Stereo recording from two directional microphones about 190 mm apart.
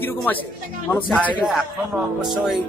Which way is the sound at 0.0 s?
10° left (ahead or behind).